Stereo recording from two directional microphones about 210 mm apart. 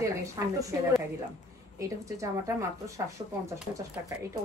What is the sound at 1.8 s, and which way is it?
Speech, 15° right (ahead or behind).